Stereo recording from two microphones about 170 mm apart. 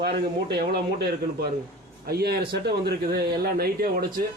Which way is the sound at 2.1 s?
65° right (ahead or behind).